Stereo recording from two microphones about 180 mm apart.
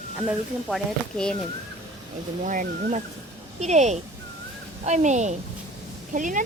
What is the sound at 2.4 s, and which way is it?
A woman's voice, 45° right (ahead or behind).